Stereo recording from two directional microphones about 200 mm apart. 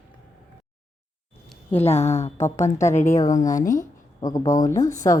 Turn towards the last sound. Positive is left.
turn(degrees=15)  # may be behind; listen again after turning